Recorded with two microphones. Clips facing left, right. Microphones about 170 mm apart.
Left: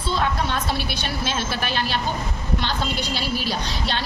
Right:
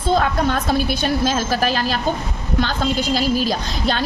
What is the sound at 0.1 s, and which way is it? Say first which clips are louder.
A woman's voice: right 6 dB; 50° right (ahead or behind).